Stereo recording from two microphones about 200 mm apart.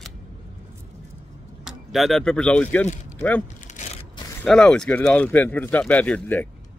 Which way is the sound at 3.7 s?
35° left (ahead or behind).